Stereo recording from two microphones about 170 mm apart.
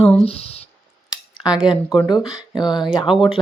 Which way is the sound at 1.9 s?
25° left (ahead or behind).